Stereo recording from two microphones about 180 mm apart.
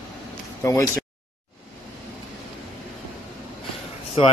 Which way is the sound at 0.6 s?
15° left (ahead or behind).